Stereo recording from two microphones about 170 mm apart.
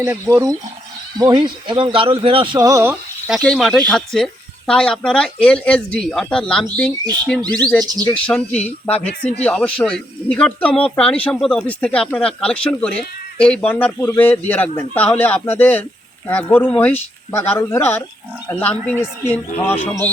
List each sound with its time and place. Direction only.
0.0 s speech: 15° right (ahead or behind)
1.2 s speech: 25° right (ahead or behind)
2.6 s speech: 20° right (ahead or behind)
3.2 s a man's voice: centre (ahead or behind)